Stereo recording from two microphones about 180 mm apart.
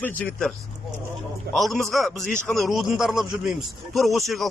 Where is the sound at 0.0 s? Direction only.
10° left (ahead or behind).